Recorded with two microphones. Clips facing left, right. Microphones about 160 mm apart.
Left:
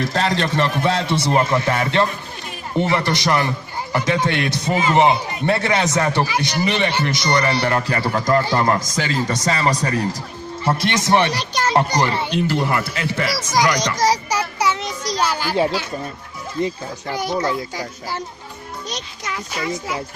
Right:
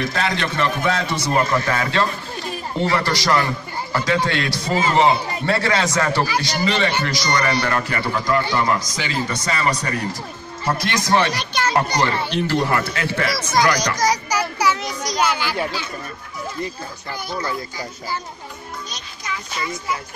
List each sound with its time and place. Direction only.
0.0 s a man's voice: 35° left (ahead or behind)
10.6 s a man's voice: 25° left (ahead or behind)
12.5 s a child's voice: 10° left (ahead or behind); by 15.5 s 40° left (ahead or behind)
17.7 s a child's voice: 75° left (ahead or behind)